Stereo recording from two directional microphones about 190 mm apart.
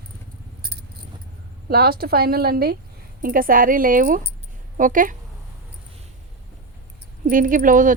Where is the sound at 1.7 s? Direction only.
55° right (ahead or behind).